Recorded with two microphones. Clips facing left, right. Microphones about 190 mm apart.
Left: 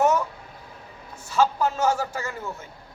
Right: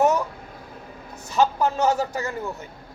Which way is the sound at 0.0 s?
15° right (ahead or behind).